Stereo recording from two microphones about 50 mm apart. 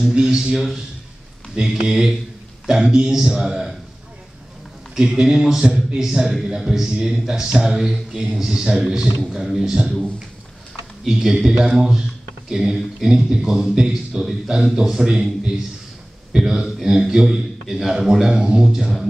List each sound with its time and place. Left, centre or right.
0.0 s speech: centre
4.9 s speech: centre
11.1 s speech: centre
16.3 s speech: centre